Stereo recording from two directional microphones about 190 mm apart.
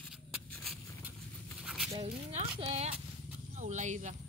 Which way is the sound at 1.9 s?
35° right (ahead or behind).